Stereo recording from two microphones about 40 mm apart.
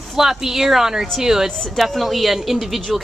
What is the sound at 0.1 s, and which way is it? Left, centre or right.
A woman's voice, centre.